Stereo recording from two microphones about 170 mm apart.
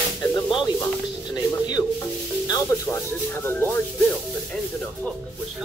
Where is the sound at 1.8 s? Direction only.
15° left (ahead or behind).